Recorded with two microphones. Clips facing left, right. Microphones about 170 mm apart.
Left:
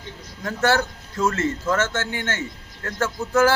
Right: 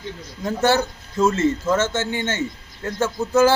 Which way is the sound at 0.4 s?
20° right (ahead or behind).